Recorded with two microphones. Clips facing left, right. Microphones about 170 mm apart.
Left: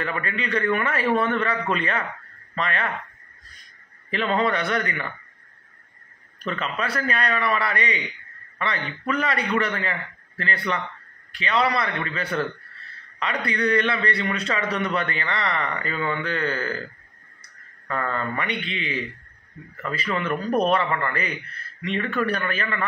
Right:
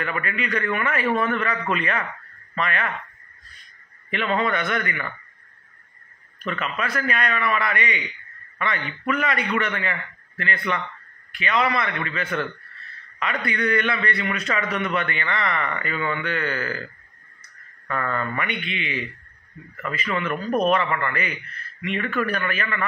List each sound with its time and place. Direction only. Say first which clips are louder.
0.0 s a man's voice: even; 30° left (ahead or behind)
4.4 s a man's voice: left 1 dB; 35° left (ahead or behind)
6.4 s a man's voice: even; 30° left (ahead or behind)
9.0 s a man's voice: right 1 dB; 30° left (ahead or behind)
17.8 s a man's voice: even; 30° left (ahead or behind)